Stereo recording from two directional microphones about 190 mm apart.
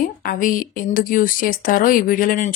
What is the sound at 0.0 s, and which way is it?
Speech, 45° left (ahead or behind).